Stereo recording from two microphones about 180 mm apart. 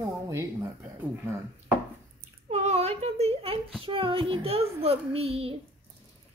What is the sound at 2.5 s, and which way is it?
Speech, 35° right (ahead or behind).